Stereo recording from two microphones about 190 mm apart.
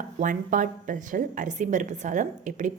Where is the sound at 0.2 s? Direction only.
45° right (ahead or behind).